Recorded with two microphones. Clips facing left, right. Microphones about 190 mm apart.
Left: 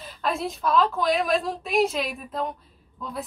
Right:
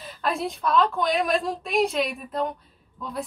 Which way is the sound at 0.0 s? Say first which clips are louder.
Even; centre (ahead or behind).